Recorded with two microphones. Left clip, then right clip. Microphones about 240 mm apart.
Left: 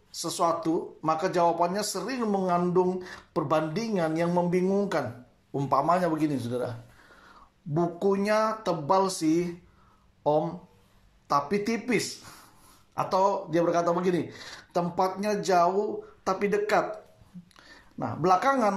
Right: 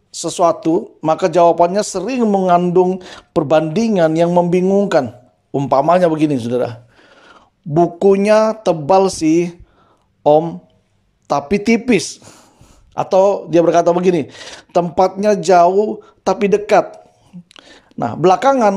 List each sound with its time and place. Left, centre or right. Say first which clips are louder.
0.2 s speech: right 12 dB; right